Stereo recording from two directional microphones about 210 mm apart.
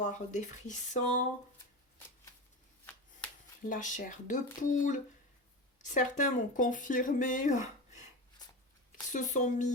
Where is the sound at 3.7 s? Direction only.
35° left (ahead or behind).